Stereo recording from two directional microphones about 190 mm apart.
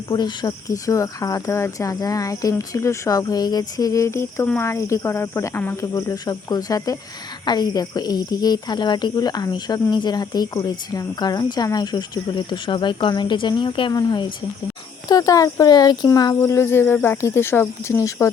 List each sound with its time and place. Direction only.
0.1 s speech: 20° left (ahead or behind)